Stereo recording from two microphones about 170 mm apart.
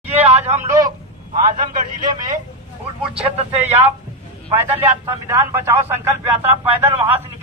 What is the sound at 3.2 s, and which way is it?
Speech, 40° right (ahead or behind).